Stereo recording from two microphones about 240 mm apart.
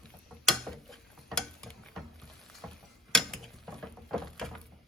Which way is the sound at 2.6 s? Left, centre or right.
Centre.